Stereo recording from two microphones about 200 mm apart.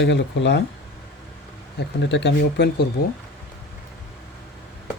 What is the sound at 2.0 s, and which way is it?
Speech, 60° left (ahead or behind).